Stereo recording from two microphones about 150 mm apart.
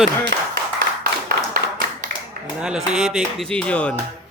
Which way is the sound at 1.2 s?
75° right (ahead or behind).